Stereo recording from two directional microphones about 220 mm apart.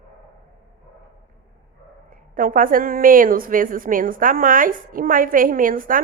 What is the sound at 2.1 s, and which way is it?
A woman's voice, 40° right (ahead or behind).